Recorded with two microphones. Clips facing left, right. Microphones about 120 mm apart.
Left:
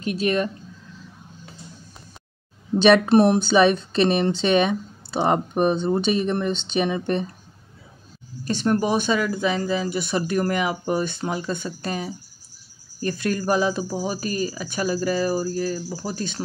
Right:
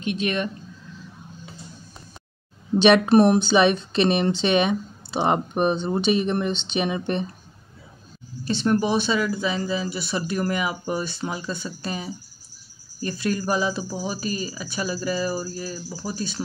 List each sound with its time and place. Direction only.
0.0 s speech: 35° left (ahead or behind)
3.1 s speech: 30° left (ahead or behind)
3.4 s speech: 45° left (ahead or behind)
8.5 s speech: 45° left (ahead or behind)